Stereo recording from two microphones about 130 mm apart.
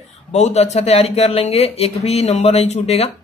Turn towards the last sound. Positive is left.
turn(degrees=50)  # may be behind; listen again after turning